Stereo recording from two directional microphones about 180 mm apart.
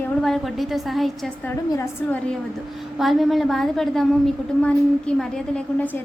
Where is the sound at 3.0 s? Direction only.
Centre (ahead or behind).